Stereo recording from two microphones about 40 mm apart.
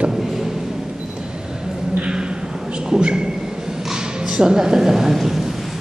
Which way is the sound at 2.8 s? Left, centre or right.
Right.